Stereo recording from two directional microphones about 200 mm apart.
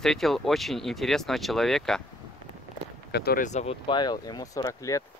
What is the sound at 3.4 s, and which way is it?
Speech, 35° left (ahead or behind).